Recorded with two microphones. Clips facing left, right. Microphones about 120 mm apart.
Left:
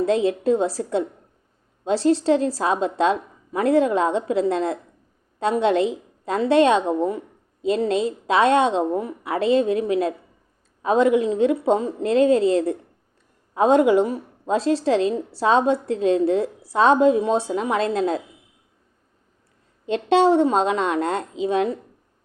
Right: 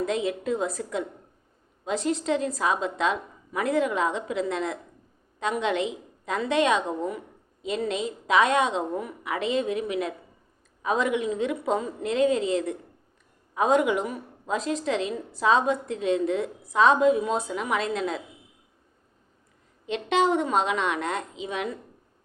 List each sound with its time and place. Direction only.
0.0 s a woman's voice: 30° left (ahead or behind)
19.8 s a woman's voice: 35° left (ahead or behind)